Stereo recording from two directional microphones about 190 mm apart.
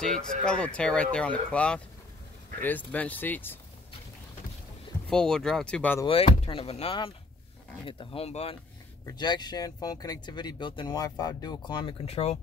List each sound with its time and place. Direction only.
0.0 s speech: 5° left (ahead or behind)
5.1 s speech: 5° left (ahead or behind)
6.0 s speech: 30° left (ahead or behind)
9.0 s speech: 20° left (ahead or behind)